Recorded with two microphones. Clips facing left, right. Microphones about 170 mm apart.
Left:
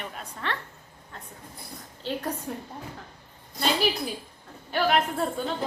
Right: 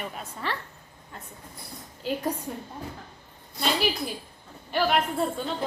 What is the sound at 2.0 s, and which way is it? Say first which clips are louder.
Speech: right 2 dB; 10° right (ahead or behind).